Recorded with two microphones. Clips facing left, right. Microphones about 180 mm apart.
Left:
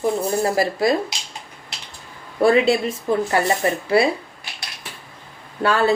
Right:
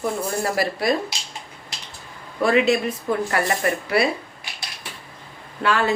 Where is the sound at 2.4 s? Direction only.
35° left (ahead or behind).